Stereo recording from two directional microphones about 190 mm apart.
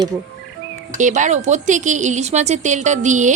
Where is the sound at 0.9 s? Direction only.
40° right (ahead or behind).